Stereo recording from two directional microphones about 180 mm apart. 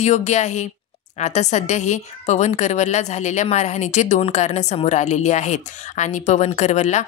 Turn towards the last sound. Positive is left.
turn(degrees=40)  # may be behind; listen again after turning